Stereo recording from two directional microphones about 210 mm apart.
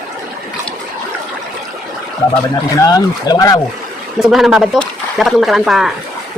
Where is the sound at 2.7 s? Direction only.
15° left (ahead or behind).